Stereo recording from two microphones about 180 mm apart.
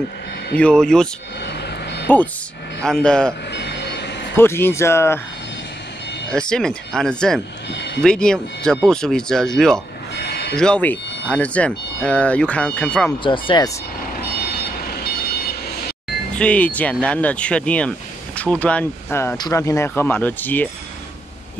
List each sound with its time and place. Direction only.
0.6 s speech: 5° left (ahead or behind)
1.4 s vehicle: 70° left (ahead or behind)
2.8 s speech: 5° left (ahead or behind)
3.5 s vehicle: 75° left (ahead or behind)
4.4 s speech: 10° left (ahead or behind)
6.3 s speech: 5° left (ahead or behind)
7.7 s speech: 70° left (ahead or behind)
8.0 s speech: 5° left (ahead or behind)
10.1 s a sound: 70° left (ahead or behind)
10.5 s speech: 5° left (ahead or behind)
13.2 s speech: 25° left (ahead or behind)
16.3 s speech: 5° left (ahead or behind)